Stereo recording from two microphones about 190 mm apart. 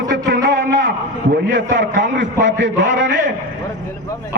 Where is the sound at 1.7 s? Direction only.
70° right (ahead or behind).